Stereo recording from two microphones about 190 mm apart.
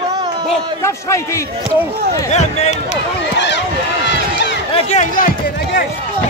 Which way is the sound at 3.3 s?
70° left (ahead or behind).